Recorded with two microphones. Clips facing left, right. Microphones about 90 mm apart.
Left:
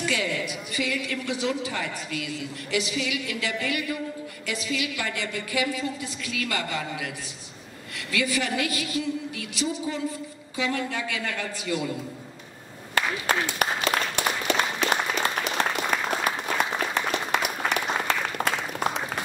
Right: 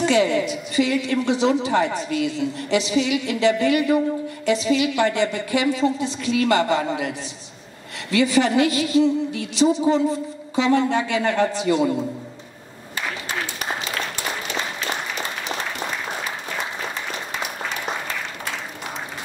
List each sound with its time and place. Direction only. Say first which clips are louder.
0.0 s a woman's voice: right 10 dB; 30° right (ahead or behind)
12.9 s applause: left 3 dB; 65° left (ahead or behind)
17.3 s applause: left 3 dB; 65° left (ahead or behind)